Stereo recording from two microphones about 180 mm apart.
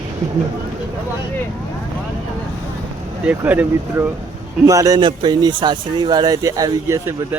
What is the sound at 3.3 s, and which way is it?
Speech, 10° right (ahead or behind).